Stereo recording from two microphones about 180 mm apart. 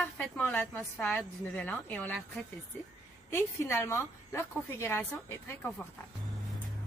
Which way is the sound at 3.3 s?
15° left (ahead or behind).